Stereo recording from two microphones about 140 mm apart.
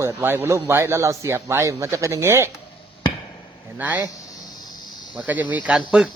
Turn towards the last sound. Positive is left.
turn(degrees=-10)  # may be behind; listen again after turning